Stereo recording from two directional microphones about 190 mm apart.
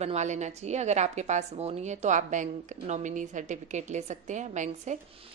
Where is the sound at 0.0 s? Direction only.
35° right (ahead or behind).